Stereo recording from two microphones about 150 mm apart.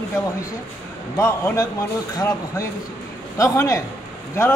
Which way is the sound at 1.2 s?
20° left (ahead or behind).